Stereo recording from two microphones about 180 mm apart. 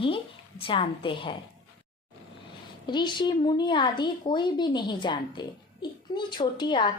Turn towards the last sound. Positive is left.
turn(degrees=25)  # may be behind; listen again after turning